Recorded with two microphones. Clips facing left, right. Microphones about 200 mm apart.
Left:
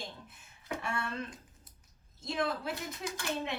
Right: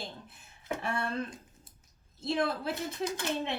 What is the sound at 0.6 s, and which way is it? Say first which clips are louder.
Speech: right 3 dB; 30° right (ahead or behind).